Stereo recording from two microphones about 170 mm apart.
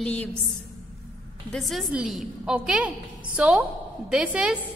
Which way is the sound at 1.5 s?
Centre (ahead or behind).